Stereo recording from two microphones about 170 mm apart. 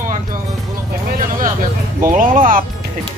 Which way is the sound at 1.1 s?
50° right (ahead or behind).